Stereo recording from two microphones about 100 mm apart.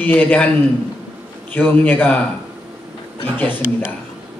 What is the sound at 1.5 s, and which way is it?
Speech, 20° left (ahead or behind).